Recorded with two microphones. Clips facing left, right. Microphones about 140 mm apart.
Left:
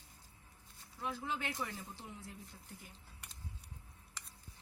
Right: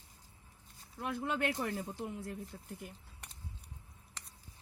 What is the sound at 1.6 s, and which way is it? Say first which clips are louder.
Speech: right 7 dB; 50° right (ahead or behind).